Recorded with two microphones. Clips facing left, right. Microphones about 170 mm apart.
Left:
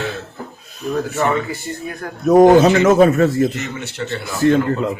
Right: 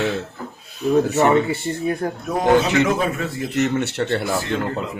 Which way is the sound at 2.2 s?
45° left (ahead or behind).